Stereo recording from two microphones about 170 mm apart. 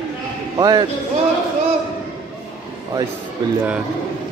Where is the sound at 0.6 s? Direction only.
25° right (ahead or behind).